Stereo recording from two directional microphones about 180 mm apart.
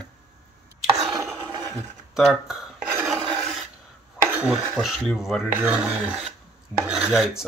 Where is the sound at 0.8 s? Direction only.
25° right (ahead or behind).